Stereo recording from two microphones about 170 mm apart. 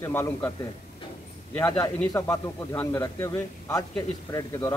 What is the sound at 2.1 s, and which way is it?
A man's voice, 20° left (ahead or behind).